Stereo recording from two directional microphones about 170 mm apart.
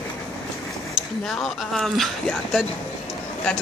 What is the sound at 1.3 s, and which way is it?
Speech, centre (ahead or behind).